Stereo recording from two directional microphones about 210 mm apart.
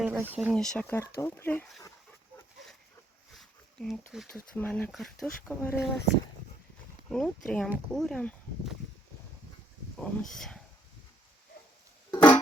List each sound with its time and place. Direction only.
0.0 s a sound: 5° right (ahead or behind)
0.5 s speech: 5° left (ahead or behind)
3.3 s a sound: centre (ahead or behind)
4.5 s speech: 10° left (ahead or behind)
7.1 s speech: 5° left (ahead or behind)
10.0 s speech: centre (ahead or behind)
12.1 s music: 20° left (ahead or behind)